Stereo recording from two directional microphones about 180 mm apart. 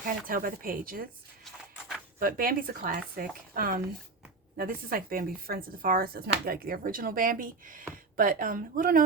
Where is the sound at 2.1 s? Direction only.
50° right (ahead or behind).